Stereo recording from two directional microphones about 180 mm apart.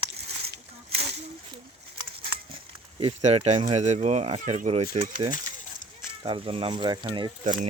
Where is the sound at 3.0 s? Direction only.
35° right (ahead or behind).